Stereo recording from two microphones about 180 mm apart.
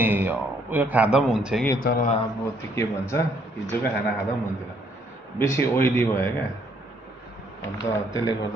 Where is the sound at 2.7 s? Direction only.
15° left (ahead or behind).